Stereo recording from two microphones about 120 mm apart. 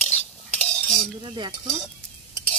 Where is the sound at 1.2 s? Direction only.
40° right (ahead or behind).